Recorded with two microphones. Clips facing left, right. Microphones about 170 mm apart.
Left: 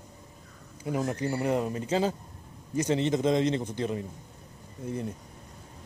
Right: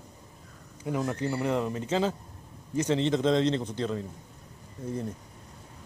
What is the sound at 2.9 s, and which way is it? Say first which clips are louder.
Speech: even; 10° left (ahead or behind).